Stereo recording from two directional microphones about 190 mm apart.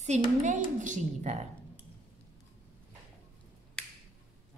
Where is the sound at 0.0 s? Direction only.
40° right (ahead or behind).